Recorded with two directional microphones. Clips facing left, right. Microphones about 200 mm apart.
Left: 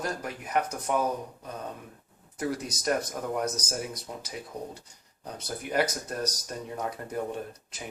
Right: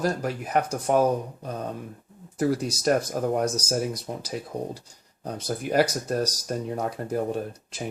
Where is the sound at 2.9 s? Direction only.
40° right (ahead or behind).